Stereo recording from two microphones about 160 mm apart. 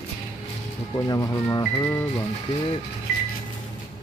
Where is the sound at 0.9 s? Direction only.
20° left (ahead or behind).